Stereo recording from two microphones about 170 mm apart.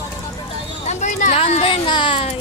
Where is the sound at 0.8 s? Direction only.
45° left (ahead or behind).